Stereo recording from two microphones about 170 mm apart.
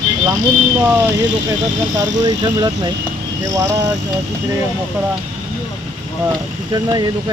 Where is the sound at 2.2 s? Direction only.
20° right (ahead or behind).